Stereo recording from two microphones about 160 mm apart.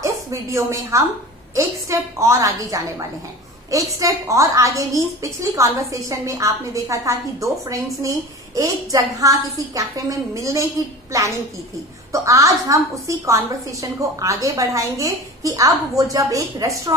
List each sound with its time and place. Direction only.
0.0 s a woman's voice: 20° right (ahead or behind)